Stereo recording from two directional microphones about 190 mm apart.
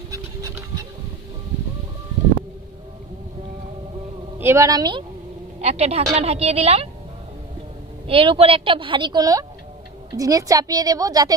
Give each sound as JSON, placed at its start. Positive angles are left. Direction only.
{"t": 4.4, "sound": "a woman's voice", "side_deg": -15}
{"t": 5.6, "sound": "a woman's voice", "side_deg": -35}
{"t": 8.1, "sound": "a woman's voice", "side_deg": -30}